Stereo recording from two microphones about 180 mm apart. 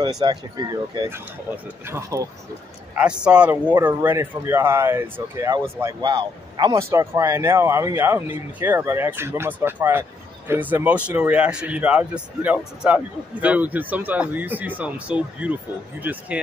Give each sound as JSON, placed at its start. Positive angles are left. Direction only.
{"t": 0.2, "sound": "speech", "side_deg": -25}
{"t": 3.0, "sound": "speech", "side_deg": -5}